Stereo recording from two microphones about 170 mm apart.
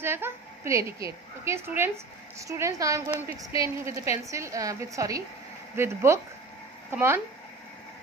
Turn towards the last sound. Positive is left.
turn(degrees=-15)  # may be behind; listen again after turning